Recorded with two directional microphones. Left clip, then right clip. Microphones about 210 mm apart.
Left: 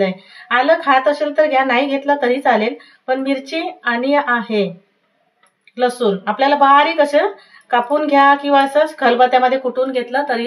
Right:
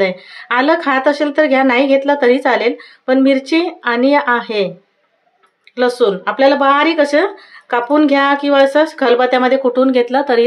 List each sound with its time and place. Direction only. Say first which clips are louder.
0.0 s a woman's voice: right 3 dB; 45° right (ahead or behind)
5.8 s a woman's voice: right 3 dB; 45° right (ahead or behind)